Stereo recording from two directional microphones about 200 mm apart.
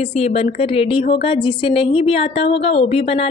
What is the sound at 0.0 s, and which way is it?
A woman's voice, 30° left (ahead or behind).